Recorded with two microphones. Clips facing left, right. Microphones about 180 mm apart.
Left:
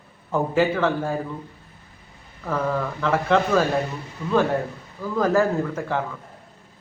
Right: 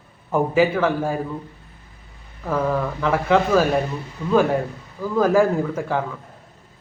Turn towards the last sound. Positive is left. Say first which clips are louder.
# right 2 dB
turn(degrees=-10)  # may be behind; listen again after turning